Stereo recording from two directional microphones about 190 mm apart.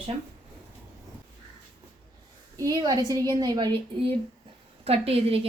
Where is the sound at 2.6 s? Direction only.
20° right (ahead or behind).